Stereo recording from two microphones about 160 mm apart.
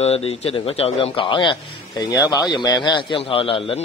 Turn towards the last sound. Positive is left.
turn(degrees=35)  # may be behind; listen again after turning